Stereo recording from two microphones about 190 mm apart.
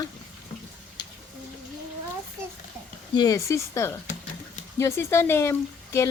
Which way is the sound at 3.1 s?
20° left (ahead or behind).